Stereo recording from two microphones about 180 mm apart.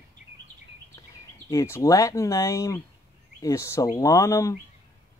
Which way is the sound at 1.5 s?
15° left (ahead or behind).